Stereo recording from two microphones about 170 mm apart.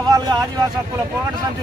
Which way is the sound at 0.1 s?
25° right (ahead or behind).